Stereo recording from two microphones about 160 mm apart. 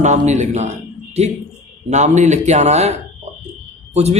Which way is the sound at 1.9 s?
45° right (ahead or behind).